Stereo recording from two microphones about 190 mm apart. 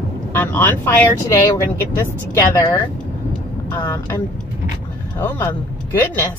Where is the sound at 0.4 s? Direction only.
10° left (ahead or behind).